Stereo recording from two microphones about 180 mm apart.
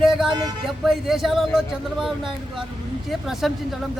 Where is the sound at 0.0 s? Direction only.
Centre (ahead or behind).